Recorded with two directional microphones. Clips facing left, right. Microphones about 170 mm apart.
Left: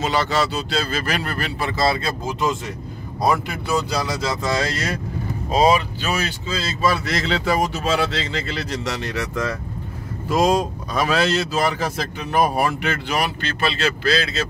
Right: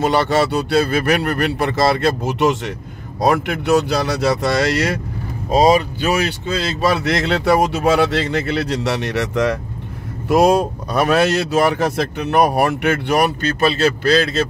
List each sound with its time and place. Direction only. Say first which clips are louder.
0.0 s speech: right 5 dB; 60° right (ahead or behind)
5.5 s speech: right 4 dB; 40° right (ahead or behind)
6.5 s speech: right 3 dB; 65° right (ahead or behind)
10.2 s speech: right 5 dB; 65° right (ahead or behind)
13.7 s speech: right 5 dB; 45° right (ahead or behind)